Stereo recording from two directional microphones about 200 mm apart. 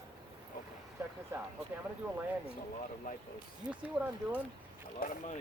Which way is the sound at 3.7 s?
5° right (ahead or behind).